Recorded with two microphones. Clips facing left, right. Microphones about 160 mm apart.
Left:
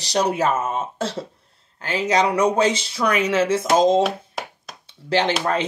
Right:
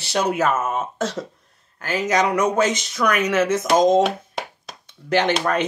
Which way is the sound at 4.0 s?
Centre (ahead or behind).